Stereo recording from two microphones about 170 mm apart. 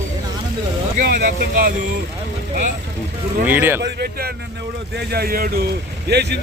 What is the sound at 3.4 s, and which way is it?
Speech, 10° right (ahead or behind).